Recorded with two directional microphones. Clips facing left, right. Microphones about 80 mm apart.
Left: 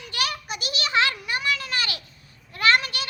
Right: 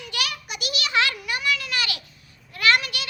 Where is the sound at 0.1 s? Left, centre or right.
Left.